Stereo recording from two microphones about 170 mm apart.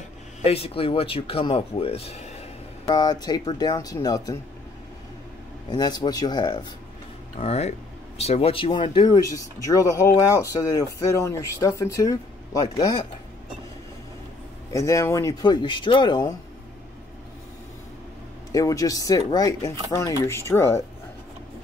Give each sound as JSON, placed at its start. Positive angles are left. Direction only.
{"t": 0.4, "sound": "speech", "side_deg": 35}
{"t": 2.9, "sound": "speech", "side_deg": 25}
{"t": 5.7, "sound": "speech", "side_deg": 25}
{"t": 7.3, "sound": "speech", "side_deg": 40}
{"t": 14.7, "sound": "speech", "side_deg": 20}
{"t": 18.5, "sound": "speech", "side_deg": 20}